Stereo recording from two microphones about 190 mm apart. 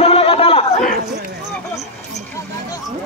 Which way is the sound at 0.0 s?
30° left (ahead or behind).